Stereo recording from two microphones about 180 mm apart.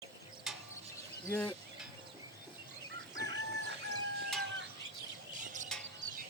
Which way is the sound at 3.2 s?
70° right (ahead or behind).